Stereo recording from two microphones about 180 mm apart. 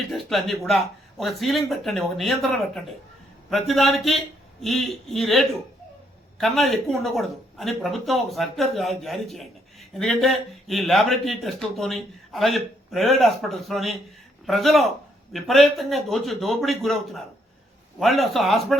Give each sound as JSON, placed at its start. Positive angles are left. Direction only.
{"t": 0.1, "sound": "speech", "side_deg": 0}